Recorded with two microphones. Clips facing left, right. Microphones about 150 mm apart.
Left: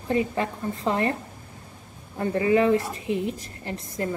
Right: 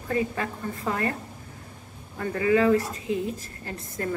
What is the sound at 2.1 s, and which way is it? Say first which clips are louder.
A woman's voice: left 2 dB; 25° left (ahead or behind).